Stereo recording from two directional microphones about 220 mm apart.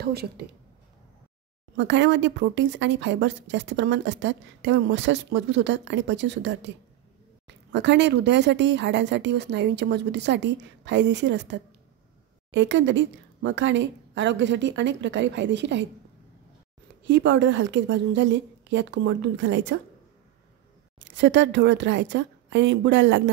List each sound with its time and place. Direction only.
0.0 s speech: 45° right (ahead or behind)
1.8 s a woman's voice: 55° right (ahead or behind)
17.0 s a woman's voice: 55° right (ahead or behind)
21.0 s a woman's voice: 55° right (ahead or behind)